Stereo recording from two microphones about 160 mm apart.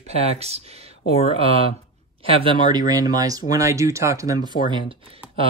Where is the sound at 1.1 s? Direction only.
40° left (ahead or behind).